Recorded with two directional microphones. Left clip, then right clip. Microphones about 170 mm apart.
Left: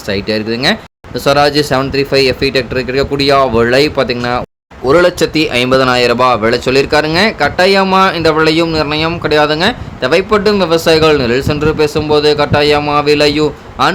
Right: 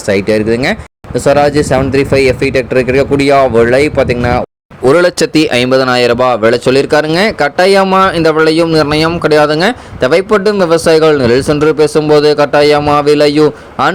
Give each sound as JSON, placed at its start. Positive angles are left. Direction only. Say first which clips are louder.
{"t": 0.1, "sound": "speech", "louder": "right 5 dB", "side_deg": -20}
{"t": 4.9, "sound": "speech", "louder": "right 1 dB", "side_deg": -35}